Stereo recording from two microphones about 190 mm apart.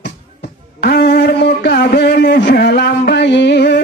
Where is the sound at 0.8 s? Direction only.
55° left (ahead or behind).